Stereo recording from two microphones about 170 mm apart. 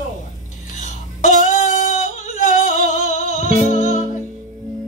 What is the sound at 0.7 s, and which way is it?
Female singing, 45° left (ahead or behind).